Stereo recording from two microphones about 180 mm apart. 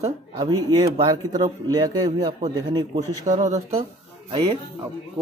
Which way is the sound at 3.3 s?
35° right (ahead or behind).